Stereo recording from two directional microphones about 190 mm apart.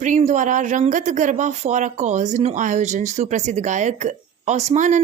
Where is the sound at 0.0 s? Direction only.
40° right (ahead or behind).